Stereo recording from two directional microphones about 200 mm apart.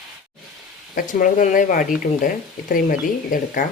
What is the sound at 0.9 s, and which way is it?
Speech, 45° left (ahead or behind).